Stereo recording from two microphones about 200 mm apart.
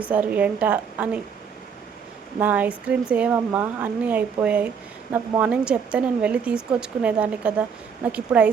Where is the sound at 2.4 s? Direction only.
10° right (ahead or behind).